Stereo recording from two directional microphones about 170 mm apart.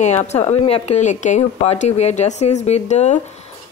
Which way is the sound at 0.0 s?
40° left (ahead or behind).